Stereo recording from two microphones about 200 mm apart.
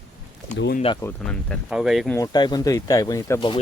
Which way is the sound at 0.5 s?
60° left (ahead or behind).